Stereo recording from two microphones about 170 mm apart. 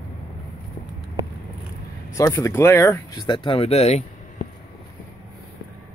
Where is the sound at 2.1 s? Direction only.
20° left (ahead or behind); by 4.0 s 40° left (ahead or behind).